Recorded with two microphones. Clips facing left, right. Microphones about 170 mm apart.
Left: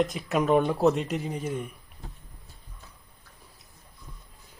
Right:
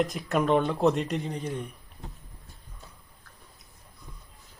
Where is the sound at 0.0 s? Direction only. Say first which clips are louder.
Left 1 dB; centre (ahead or behind).